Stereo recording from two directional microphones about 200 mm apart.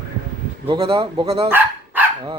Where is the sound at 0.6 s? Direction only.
25° right (ahead or behind).